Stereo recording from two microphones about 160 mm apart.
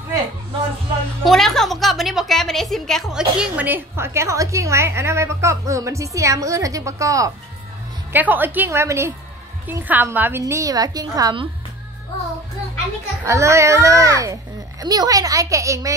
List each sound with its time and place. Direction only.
1.2 s a woman's voice: centre (ahead or behind); by 11.4 s 25° right (ahead or behind)
13.2 s a child's voice: 20° right (ahead or behind)